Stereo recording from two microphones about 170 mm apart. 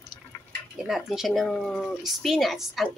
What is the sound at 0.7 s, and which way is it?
Speech, centre (ahead or behind).